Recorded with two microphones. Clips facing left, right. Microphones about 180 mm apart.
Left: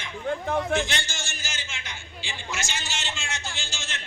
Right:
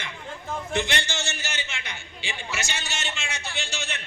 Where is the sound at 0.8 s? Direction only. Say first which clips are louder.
Right 2 dB; 65° right (ahead or behind).